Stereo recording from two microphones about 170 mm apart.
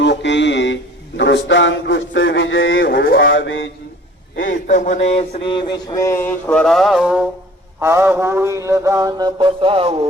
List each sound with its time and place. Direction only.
0.0 s a sound: 90° left
4.4 s speech: 50° left (ahead or behind); by 7.3 s 5° right (ahead or behind)
7.8 s mantra: 15° right (ahead or behind); by 10.1 s 35° right (ahead or behind)